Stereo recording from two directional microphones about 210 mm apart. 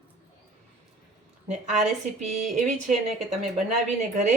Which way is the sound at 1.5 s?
35° right (ahead or behind).